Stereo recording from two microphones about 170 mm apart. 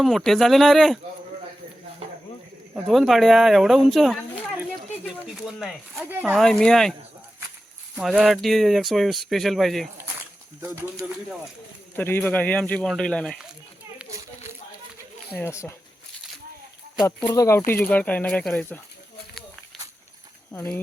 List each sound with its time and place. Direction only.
0.0 s speech: centre (ahead or behind)
2.7 s speech: centre (ahead or behind)
5.0 s a sound: centre (ahead or behind)
5.9 s speech: 10° right (ahead or behind)
6.3 s speech: 5° left (ahead or behind)
7.9 s speech: 5° right (ahead or behind)
11.0 s speech: 5° right (ahead or behind)
11.9 s speech: 10° left (ahead or behind)
15.4 s speech: 15° left (ahead or behind)
17.1 s speech: 15° left (ahead or behind)
20.5 s speech: 10° left (ahead or behind)